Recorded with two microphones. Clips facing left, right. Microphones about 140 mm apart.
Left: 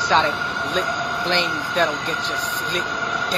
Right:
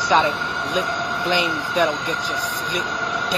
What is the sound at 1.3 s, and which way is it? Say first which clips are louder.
Speech: right 3 dB; 5° right (ahead or behind).